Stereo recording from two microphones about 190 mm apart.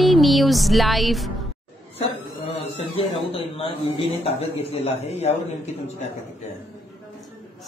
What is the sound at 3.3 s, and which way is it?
A man's voice, 30° left (ahead or behind).